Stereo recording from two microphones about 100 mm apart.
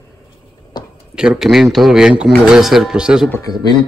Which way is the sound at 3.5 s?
55° right (ahead or behind).